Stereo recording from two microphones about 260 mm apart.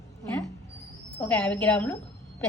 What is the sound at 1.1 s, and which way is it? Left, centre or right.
Speech, centre.